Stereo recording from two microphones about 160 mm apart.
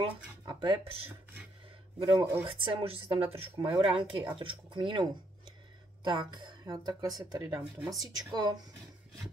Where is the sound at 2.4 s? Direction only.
35° right (ahead or behind).